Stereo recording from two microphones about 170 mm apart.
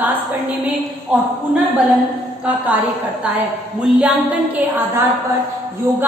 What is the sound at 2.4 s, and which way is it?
A woman's voice, 10° right (ahead or behind).